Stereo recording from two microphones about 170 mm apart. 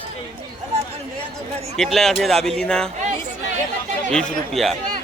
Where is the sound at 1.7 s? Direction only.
Centre (ahead or behind).